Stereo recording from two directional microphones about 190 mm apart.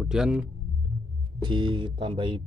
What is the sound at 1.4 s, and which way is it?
Speech, 25° right (ahead or behind).